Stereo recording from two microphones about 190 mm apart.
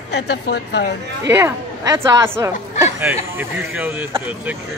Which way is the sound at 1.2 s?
15° right (ahead or behind).